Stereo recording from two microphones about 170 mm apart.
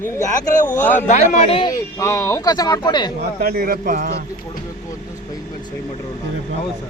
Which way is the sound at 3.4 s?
65° right (ahead or behind).